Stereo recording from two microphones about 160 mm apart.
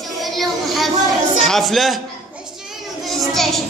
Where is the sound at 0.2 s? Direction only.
Centre (ahead or behind).